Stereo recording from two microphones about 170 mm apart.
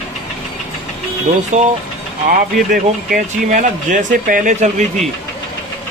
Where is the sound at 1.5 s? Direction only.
45° right (ahead or behind).